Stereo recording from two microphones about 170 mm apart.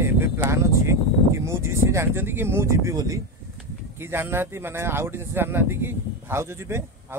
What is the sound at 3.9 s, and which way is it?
Speech, 15° right (ahead or behind).